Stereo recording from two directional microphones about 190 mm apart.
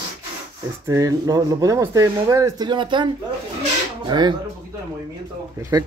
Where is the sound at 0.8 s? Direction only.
15° right (ahead or behind).